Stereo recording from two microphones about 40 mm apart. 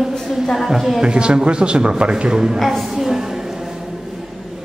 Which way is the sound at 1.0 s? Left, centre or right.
Right.